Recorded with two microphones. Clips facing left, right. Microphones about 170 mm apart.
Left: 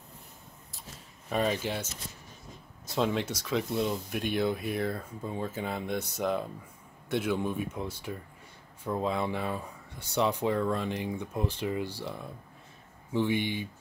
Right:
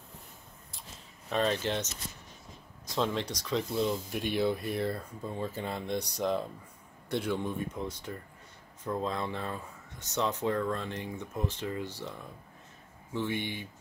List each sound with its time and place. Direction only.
1.3 s speech: 10° left (ahead or behind)
3.0 s speech: 5° left (ahead or behind)